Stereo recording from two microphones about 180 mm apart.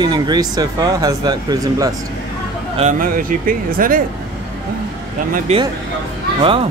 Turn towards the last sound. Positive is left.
turn(degrees=-30)  # may be behind; listen again after turning